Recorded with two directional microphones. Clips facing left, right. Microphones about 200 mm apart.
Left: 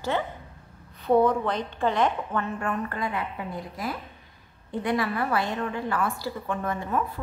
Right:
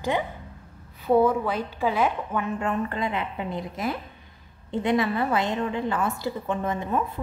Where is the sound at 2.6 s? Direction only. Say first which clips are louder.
Right 3 dB; 20° right (ahead or behind).